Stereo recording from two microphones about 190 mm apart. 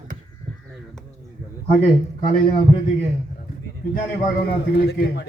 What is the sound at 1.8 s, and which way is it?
Speech, 35° left (ahead or behind).